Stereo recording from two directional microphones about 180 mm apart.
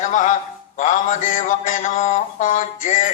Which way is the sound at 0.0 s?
45° left (ahead or behind).